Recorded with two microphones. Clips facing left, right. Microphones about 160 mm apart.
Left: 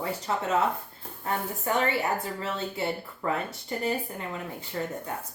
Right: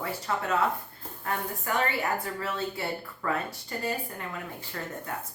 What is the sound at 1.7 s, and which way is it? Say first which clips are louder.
Speech: left 2 dB; 25° left (ahead or behind).